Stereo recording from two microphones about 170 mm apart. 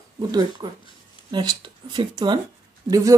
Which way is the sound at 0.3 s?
25° right (ahead or behind).